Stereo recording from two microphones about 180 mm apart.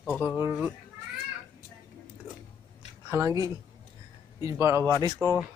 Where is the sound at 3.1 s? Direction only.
15° right (ahead or behind).